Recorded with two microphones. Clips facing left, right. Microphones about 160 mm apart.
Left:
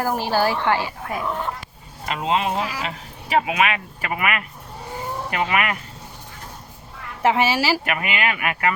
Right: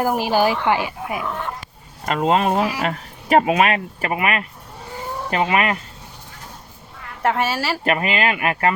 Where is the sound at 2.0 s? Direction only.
50° right (ahead or behind); by 5.8 s 30° right (ahead or behind).